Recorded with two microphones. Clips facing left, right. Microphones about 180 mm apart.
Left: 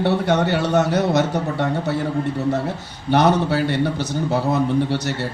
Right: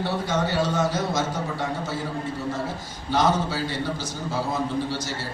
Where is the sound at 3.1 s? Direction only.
65° left (ahead or behind).